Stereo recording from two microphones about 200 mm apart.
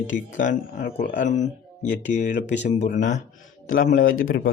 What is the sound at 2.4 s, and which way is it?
Speech, 35° left (ahead or behind).